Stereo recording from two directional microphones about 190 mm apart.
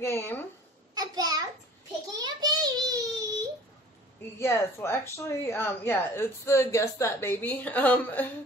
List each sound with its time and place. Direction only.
0.0 s speech: 15° left (ahead or behind)
0.9 s a child's voice: 20° right (ahead or behind)
2.1 s child singing: 20° right (ahead or behind)
4.4 s speech: 15° left (ahead or behind)